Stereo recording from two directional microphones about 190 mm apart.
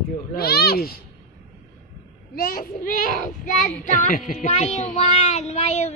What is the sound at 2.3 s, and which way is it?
A child's voice, 50° left (ahead or behind).